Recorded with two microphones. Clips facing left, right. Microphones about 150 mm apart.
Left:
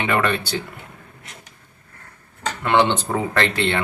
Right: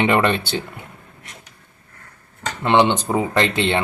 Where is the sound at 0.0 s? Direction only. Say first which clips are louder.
Right 4 dB; 25° right (ahead or behind).